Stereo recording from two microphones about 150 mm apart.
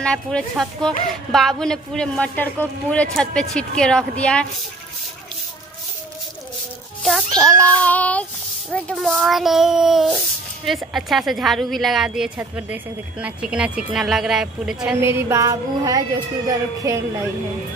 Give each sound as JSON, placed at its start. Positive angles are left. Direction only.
{"t": 0.0, "sound": "speech", "side_deg": 5}
{"t": 4.2, "sound": "child singing", "side_deg": 5}
{"t": 7.0, "sound": "child singing", "side_deg": 0}
{"t": 9.1, "sound": "speech", "side_deg": 0}
{"t": 15.0, "sound": "speech", "side_deg": -15}